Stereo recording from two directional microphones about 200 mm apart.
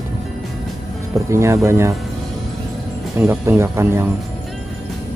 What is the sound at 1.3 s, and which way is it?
Speech, 15° right (ahead or behind).